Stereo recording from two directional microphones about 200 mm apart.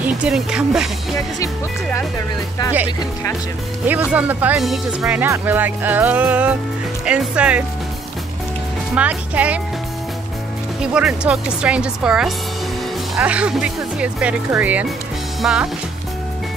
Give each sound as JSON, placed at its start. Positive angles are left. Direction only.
{"t": 0.0, "sound": "speech", "side_deg": -5}
{"t": 1.1, "sound": "speech", "side_deg": 15}
{"t": 3.8, "sound": "speech", "side_deg": -10}
{"t": 8.9, "sound": "speech", "side_deg": -5}
{"t": 10.8, "sound": "speech", "side_deg": -5}